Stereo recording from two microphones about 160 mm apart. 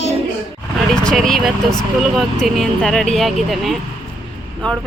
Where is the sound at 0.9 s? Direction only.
5° left (ahead or behind).